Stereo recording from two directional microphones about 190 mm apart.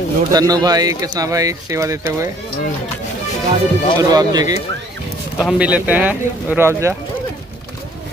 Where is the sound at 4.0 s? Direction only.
20° right (ahead or behind).